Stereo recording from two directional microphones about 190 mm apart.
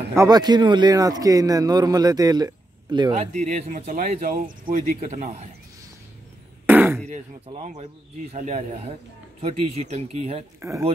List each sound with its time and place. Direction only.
0.1 s a man's voice: 20° right (ahead or behind)
3.3 s speech: 40° right (ahead or behind)
6.6 s throat clearing: 10° right (ahead or behind)
7.1 s speech: 35° right (ahead or behind)
10.6 s speech: 15° right (ahead or behind)